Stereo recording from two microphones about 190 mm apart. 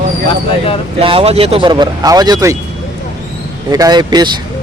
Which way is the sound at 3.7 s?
20° right (ahead or behind).